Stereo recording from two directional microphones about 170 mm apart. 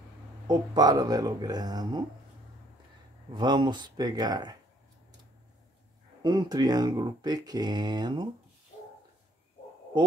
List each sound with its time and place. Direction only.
0.5 s speech: 25° right (ahead or behind)
3.3 s speech: 25° right (ahead or behind)
6.2 s speech: 25° right (ahead or behind)